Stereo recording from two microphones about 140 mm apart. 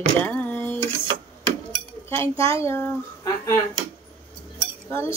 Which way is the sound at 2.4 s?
20° left (ahead or behind).